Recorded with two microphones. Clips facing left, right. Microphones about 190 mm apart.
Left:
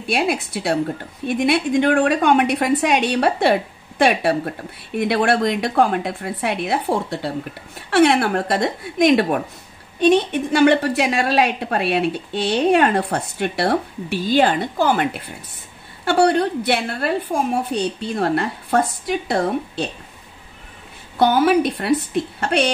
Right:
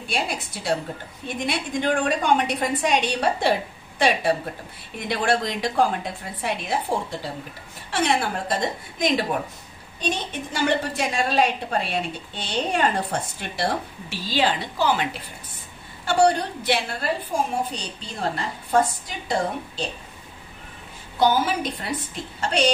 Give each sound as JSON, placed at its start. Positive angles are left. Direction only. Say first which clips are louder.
{"t": 0.1, "sound": "a woman's voice", "louder": "left 8 dB", "side_deg": 65}
{"t": 16.1, "sound": "a woman's voice", "louder": "left 4 dB", "side_deg": 60}
{"t": 21.2, "sound": "a woman's voice", "louder": "left 6 dB", "side_deg": 60}